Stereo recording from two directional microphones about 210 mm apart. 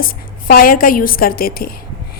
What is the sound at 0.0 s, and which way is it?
A woman's voice, 40° left (ahead or behind).